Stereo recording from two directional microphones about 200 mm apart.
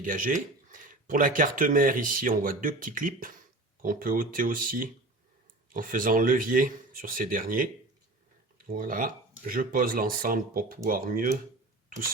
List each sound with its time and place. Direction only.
0.0 s speech: 45° right (ahead or behind)